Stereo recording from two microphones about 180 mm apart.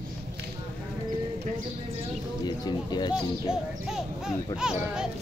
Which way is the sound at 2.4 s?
25° left (ahead or behind).